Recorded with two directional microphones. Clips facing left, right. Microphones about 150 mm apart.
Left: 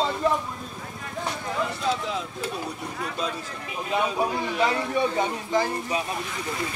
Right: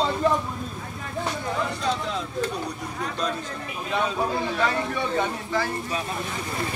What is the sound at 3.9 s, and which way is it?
A man's voice, 15° left (ahead or behind).